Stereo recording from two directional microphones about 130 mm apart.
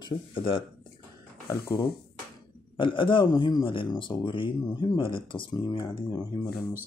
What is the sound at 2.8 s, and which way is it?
Speech, 40° left (ahead or behind).